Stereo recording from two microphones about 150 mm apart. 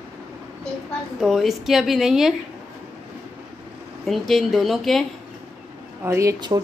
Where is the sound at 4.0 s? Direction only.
Centre (ahead or behind).